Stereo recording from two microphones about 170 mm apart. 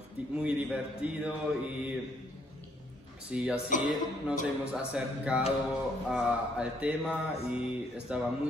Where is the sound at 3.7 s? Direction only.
50° left (ahead or behind).